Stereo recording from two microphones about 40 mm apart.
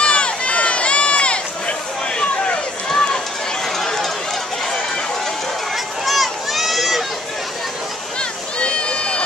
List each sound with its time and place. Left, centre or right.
0.0 s run: left
2.9 s run: centre
6.0 s run: centre
8.2 s a sound: left